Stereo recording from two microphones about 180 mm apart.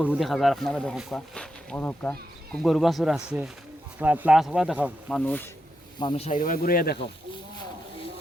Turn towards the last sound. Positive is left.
turn(degrees=55)  # may be behind; listen again after turning